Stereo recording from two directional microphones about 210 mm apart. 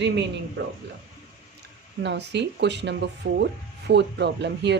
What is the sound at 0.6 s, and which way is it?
Speech, 65° right (ahead or behind).